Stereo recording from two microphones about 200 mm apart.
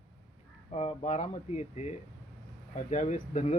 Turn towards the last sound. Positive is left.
turn(degrees=35)  # may be behind; listen again after turning